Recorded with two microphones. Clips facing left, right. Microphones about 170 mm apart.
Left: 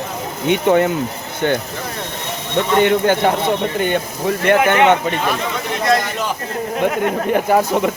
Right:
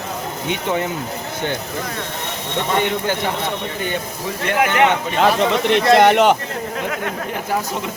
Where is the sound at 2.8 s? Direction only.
60° left (ahead or behind).